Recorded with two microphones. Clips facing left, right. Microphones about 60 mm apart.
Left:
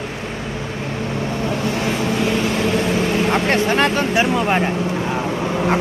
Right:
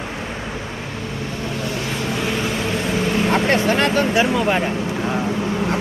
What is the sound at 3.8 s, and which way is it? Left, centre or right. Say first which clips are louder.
Vehicle: even; left.